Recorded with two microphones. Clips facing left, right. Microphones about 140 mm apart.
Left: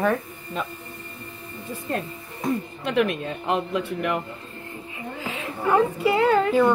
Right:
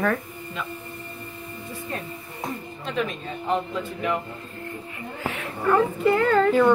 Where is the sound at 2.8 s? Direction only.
65° left (ahead or behind).